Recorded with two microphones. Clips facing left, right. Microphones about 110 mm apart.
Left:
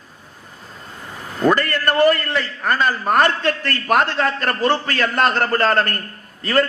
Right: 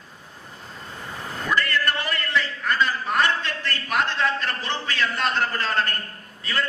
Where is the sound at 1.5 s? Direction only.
50° left (ahead or behind).